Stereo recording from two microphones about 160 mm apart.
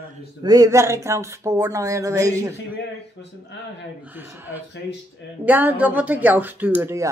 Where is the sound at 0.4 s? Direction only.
25° right (ahead or behind).